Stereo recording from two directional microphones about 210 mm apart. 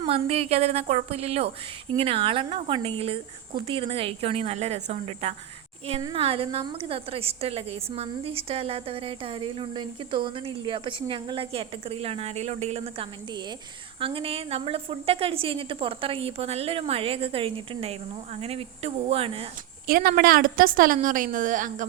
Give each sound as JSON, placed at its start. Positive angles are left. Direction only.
{"t": 0.0, "sound": "a woman's voice", "side_deg": -30}
{"t": 19.9, "sound": "a woman's voice", "side_deg": -45}